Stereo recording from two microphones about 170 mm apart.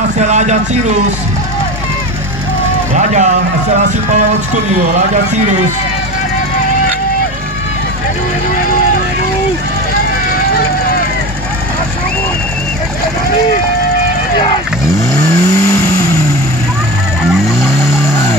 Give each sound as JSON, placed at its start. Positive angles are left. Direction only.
{"t": 0.3, "sound": "speech", "side_deg": -45}
{"t": 3.0, "sound": "speech", "side_deg": -45}
{"t": 15.2, "sound": "vehicle", "side_deg": 15}